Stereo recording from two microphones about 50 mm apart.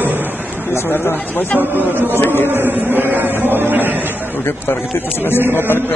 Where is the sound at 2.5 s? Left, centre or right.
Right.